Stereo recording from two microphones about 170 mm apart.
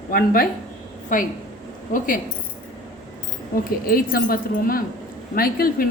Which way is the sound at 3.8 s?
60° left (ahead or behind).